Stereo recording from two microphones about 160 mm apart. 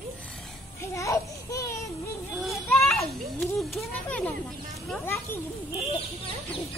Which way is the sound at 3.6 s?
Centre (ahead or behind).